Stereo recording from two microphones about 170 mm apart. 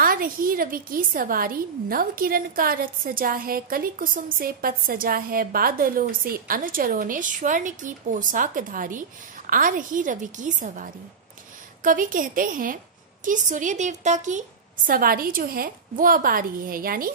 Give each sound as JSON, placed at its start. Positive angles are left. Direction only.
{"t": 0.0, "sound": "a woman's voice", "side_deg": -55}
{"t": 14.9, "sound": "a woman's voice", "side_deg": -55}